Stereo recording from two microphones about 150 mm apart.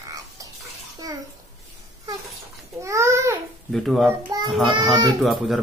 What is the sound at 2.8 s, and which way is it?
Babbling, 20° right (ahead or behind).